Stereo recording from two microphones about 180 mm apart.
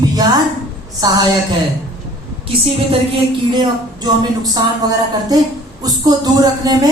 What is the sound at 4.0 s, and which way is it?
Speech, 20° right (ahead or behind).